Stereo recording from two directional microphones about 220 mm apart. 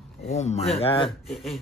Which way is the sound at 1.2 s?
Centre (ahead or behind).